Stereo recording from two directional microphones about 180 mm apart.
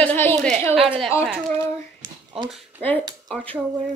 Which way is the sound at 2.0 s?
25° right (ahead or behind).